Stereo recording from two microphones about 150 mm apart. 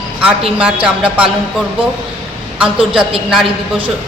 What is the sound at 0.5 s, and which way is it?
A woman's voice, 5° right (ahead or behind).